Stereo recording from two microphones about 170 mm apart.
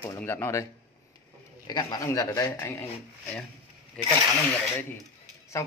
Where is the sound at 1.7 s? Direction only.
25° left (ahead or behind).